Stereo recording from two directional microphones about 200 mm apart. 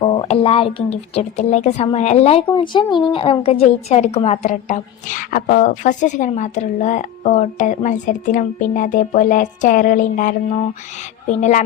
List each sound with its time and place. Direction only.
0.0 s speech: 25° left (ahead or behind); by 10.3 s 40° left (ahead or behind)
11.3 s speech: 35° left (ahead or behind)